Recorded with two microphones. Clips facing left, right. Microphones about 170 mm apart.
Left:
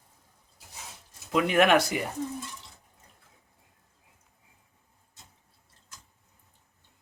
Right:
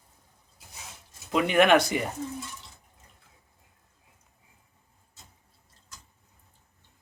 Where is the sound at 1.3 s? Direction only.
Centre (ahead or behind).